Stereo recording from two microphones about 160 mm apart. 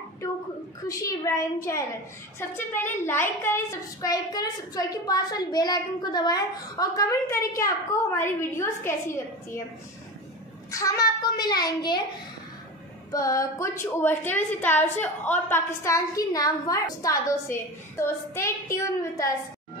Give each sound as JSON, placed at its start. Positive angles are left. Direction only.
{"t": 0.8, "sound": "a woman's voice", "side_deg": 20}
{"t": 10.7, "sound": "a woman's voice", "side_deg": 20}
{"t": 13.1, "sound": "a woman's voice", "side_deg": 20}